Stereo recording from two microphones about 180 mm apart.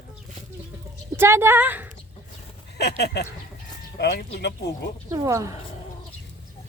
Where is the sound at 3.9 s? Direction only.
65° left (ahead or behind).